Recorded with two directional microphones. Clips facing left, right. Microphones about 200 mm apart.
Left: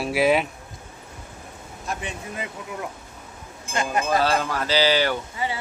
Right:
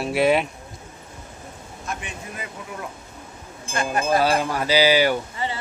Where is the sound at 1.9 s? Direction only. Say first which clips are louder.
Left 2 dB; 30° left (ahead or behind).